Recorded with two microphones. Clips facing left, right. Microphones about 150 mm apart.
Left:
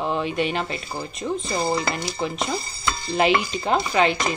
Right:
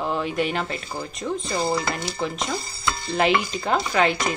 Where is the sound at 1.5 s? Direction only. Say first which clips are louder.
Even; 15° left (ahead or behind).